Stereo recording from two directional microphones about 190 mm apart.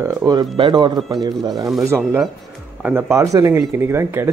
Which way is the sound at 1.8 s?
10° right (ahead or behind).